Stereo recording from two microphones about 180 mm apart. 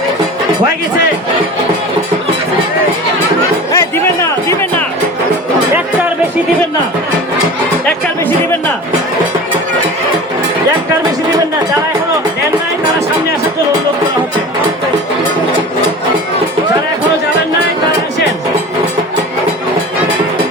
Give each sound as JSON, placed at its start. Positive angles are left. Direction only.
{"t": 3.7, "sound": "music", "side_deg": 15}